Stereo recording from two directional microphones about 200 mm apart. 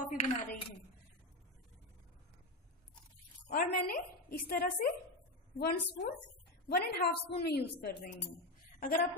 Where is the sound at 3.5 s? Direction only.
40° left (ahead or behind).